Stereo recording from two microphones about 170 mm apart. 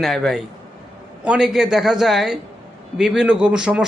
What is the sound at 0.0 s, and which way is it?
A man's voice, centre (ahead or behind).